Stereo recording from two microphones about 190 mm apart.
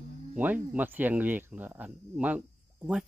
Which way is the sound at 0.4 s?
10° right (ahead or behind).